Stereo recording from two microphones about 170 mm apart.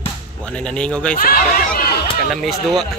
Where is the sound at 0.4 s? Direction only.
5° left (ahead or behind).